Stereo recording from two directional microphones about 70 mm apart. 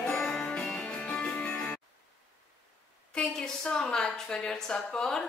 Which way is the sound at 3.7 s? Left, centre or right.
Centre.